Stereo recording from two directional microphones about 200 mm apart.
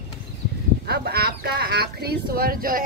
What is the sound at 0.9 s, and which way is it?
Speech, 50° right (ahead or behind).